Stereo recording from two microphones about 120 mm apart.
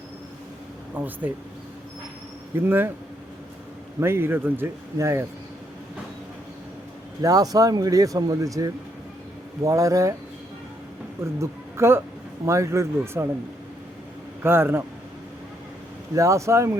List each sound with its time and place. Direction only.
1.0 s speech: 15° right (ahead or behind)
2.6 s speech: 20° right (ahead or behind)
4.0 s speech: 20° right (ahead or behind)
7.2 s speech: 30° right (ahead or behind)
11.2 s speech: 20° right (ahead or behind)
14.4 s speech: 20° right (ahead or behind)
16.1 s speech: 25° right (ahead or behind)